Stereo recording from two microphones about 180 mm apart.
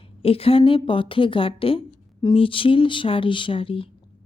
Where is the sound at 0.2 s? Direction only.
30° left (ahead or behind).